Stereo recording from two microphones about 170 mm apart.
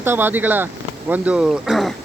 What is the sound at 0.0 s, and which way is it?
Speech, 15° right (ahead or behind).